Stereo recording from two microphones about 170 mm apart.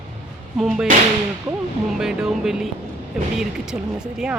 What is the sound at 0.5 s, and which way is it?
Speech, 5° right (ahead or behind).